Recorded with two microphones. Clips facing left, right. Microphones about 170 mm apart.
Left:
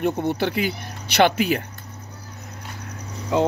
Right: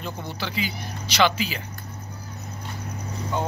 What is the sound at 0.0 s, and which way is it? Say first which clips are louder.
Speech: left 11 dB; 60° left (ahead or behind).